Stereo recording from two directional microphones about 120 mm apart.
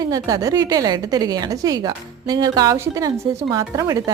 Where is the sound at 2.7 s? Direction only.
25° right (ahead or behind).